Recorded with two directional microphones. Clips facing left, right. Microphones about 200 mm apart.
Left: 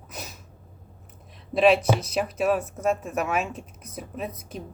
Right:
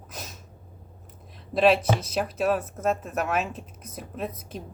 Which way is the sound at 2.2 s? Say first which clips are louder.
Even; 5° left (ahead or behind).